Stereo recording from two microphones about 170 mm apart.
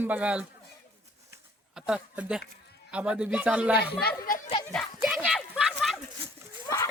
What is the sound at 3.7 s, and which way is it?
Speech, 70° left (ahead or behind).